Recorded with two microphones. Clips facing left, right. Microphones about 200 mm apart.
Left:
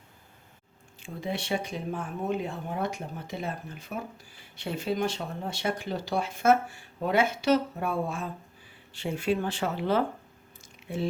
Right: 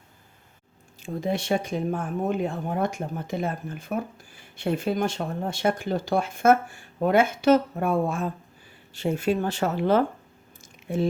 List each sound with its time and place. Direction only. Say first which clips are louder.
0.9 s speech: right 6 dB; 40° right (ahead or behind)